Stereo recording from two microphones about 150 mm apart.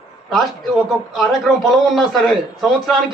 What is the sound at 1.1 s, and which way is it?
A man's voice, centre (ahead or behind).